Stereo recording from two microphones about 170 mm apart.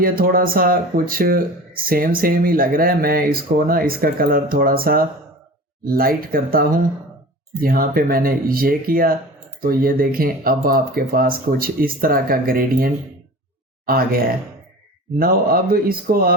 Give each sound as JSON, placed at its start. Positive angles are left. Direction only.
{"t": 0.0, "sound": "speech", "side_deg": -60}